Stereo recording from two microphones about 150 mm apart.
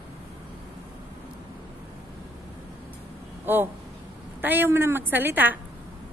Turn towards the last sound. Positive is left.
turn(degrees=-10)  # may be behind; listen again after turning